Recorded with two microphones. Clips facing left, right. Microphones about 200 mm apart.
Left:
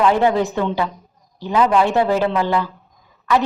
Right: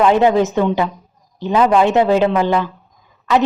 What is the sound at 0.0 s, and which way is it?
A woman's voice, 20° right (ahead or behind).